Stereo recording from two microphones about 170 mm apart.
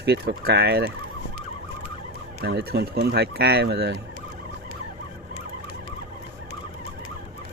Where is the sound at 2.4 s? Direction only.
65° right (ahead or behind).